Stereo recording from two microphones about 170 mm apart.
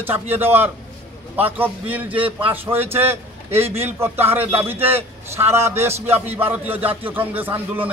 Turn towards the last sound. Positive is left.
turn(degrees=-10)  # may be behind; listen again after turning